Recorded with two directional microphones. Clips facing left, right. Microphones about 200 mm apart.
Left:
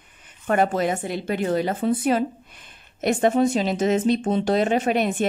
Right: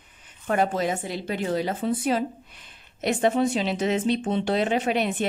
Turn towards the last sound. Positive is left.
turn(degrees=45)  # may be behind; listen again after turning